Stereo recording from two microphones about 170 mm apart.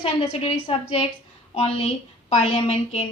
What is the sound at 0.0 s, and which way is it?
A woman's voice, 35° left (ahead or behind).